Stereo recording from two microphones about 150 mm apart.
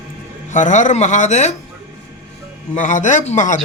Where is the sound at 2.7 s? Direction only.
55° left (ahead or behind).